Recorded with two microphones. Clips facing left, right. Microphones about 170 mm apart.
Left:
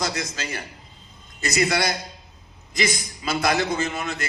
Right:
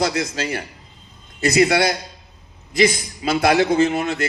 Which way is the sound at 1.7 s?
60° right (ahead or behind).